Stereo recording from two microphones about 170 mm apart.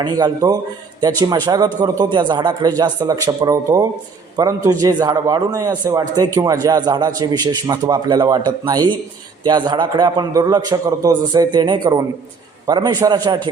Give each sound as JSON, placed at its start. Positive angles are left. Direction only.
{"t": 0.0, "sound": "a man's voice", "side_deg": -20}